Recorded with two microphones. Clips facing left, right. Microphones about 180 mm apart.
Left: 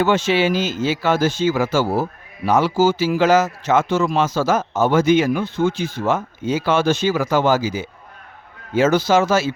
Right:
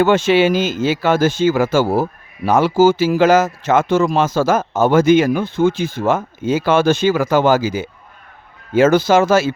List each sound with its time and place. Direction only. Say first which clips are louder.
0.0 s speech: right 4 dB; 50° right (ahead or behind)